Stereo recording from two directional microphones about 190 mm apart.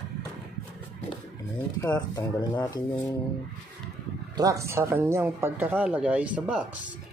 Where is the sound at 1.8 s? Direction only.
20° left (ahead or behind).